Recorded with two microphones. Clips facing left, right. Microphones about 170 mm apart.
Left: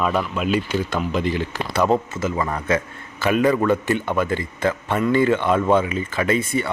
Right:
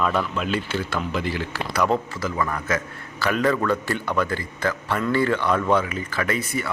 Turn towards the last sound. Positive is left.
turn(degrees=25)  # may be behind; listen again after turning